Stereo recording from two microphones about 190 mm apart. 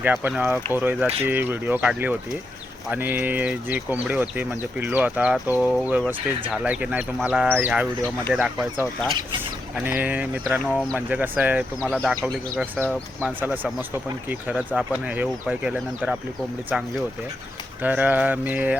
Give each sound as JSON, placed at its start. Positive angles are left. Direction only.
{"t": 0.0, "sound": "speech", "side_deg": -10}